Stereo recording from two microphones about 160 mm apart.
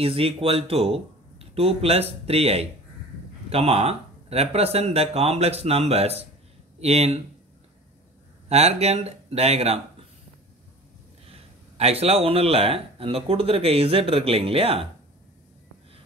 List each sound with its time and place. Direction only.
0.0 s speech: 35° right (ahead or behind)
8.5 s speech: 40° right (ahead or behind)
11.2 s speech: 40° right (ahead or behind)